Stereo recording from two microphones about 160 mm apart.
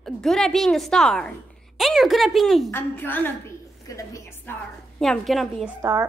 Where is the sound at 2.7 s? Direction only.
10° left (ahead or behind).